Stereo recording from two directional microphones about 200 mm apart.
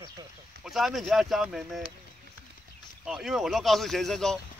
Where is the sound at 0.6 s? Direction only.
Centre (ahead or behind).